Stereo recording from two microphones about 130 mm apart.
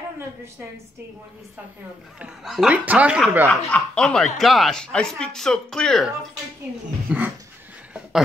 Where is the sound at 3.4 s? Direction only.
10° left (ahead or behind).